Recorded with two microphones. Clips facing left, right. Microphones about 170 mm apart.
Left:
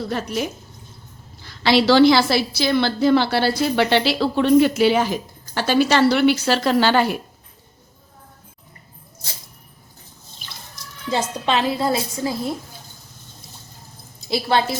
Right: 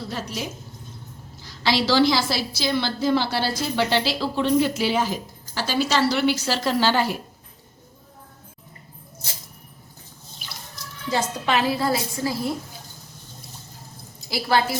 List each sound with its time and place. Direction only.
0.0 s a woman's voice: 55° left (ahead or behind)
11.1 s a woman's voice: 25° left (ahead or behind)
14.3 s a woman's voice: 25° left (ahead or behind)